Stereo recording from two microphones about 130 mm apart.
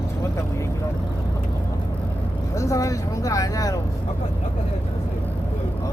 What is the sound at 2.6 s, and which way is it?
Speech, 25° left (ahead or behind).